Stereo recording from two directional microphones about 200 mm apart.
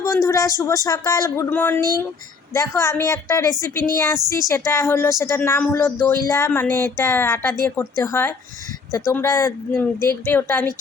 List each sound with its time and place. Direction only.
0.0 s speech: 15° left (ahead or behind)